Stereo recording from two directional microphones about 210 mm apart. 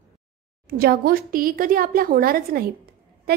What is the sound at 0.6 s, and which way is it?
A woman's voice, 45° right (ahead or behind).